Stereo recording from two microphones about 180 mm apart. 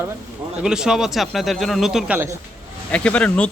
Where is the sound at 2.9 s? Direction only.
5° left (ahead or behind).